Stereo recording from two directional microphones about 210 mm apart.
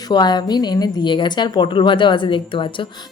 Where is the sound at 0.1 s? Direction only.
20° left (ahead or behind).